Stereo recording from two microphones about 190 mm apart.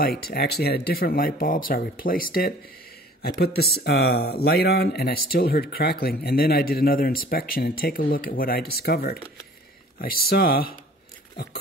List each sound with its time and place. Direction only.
0.0 s speech: 55° left (ahead or behind)
3.5 s speech: 55° left (ahead or behind)